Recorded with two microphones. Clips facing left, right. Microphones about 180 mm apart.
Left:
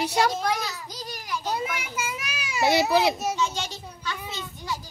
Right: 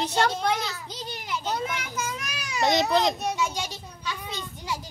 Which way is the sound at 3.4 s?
10° right (ahead or behind).